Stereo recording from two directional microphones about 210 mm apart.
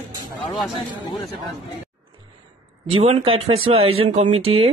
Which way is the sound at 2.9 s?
30° right (ahead or behind).